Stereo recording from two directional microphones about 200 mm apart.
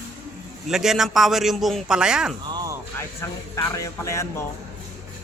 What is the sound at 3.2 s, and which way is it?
A man's voice, 15° left (ahead or behind).